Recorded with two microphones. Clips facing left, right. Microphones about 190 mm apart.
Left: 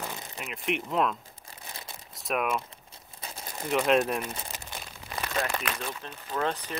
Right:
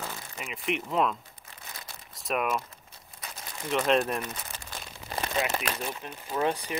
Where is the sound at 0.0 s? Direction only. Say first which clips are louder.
Left 1 dB; 15° left (ahead or behind).